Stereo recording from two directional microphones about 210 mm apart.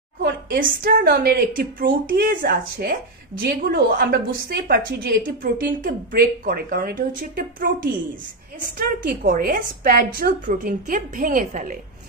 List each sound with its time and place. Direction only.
0.2 s a woman's voice: 45° right (ahead or behind)